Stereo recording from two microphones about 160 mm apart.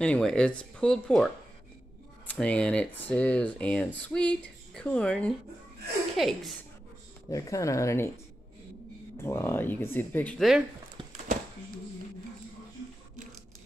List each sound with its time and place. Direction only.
0.0 s speech: 5° left (ahead or behind)
7.2 s speech: 20° left (ahead or behind)
9.2 s speech: 15° left (ahead or behind)